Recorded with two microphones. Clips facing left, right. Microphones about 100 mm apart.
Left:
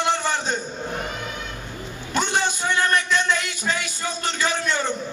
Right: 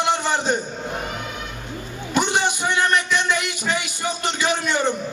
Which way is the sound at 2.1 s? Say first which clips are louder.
Right 2 dB; 15° right (ahead or behind).